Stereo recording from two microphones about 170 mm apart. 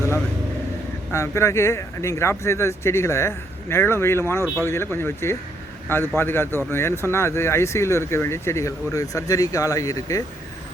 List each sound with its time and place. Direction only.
1.1 s speech: 15° left (ahead or behind)